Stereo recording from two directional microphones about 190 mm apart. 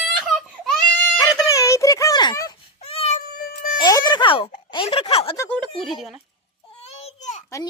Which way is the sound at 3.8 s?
20° left (ahead or behind).